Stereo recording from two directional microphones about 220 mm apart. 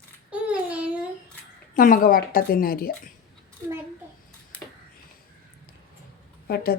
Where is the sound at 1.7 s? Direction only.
40° left (ahead or behind).